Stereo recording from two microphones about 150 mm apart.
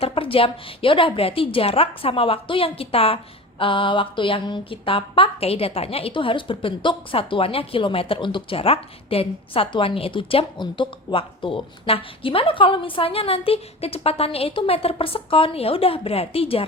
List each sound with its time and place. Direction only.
0.0 s speech: 35° left (ahead or behind)